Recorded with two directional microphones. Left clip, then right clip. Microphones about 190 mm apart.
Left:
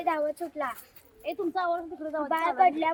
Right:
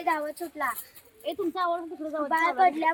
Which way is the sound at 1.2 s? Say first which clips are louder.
Right 1 dB; 50° right (ahead or behind).